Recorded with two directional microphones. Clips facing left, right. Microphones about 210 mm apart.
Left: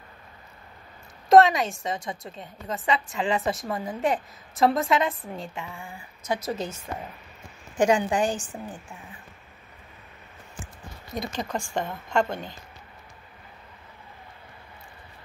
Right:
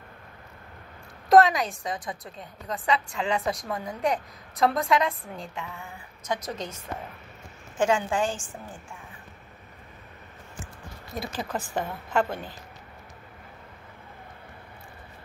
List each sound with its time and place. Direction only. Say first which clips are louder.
1.3 s a woman's voice: left 2 dB; centre (ahead or behind); by 8.5 s 20° left (ahead or behind)
11.1 s a woman's voice: left 2 dB; 5° right (ahead or behind)